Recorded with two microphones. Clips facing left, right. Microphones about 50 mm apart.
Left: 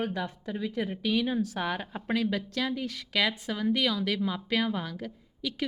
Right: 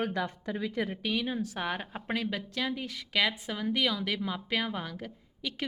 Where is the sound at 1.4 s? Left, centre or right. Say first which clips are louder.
Left 2 dB; right.